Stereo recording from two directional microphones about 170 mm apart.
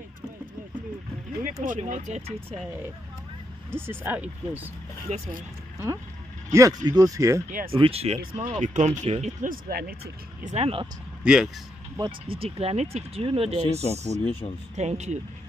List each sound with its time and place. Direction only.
1.4 s speech: 50° right (ahead or behind)
3.7 s speech: 15° right (ahead or behind)
5.1 s speech: 45° right (ahead or behind)
6.5 s speech: 20° right (ahead or behind)
7.4 s speech: 50° right (ahead or behind)
7.7 s speech: 35° right (ahead or behind); by 9.9 s 60° right (ahead or behind)
10.4 s speech: 40° right (ahead or behind)
11.2 s speech: 5° right (ahead or behind)
12.0 s speech: 35° right (ahead or behind)